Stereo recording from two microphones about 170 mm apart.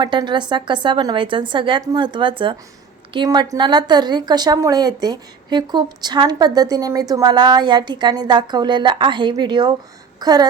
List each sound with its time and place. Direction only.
0.0 s a woman's voice: 30° right (ahead or behind)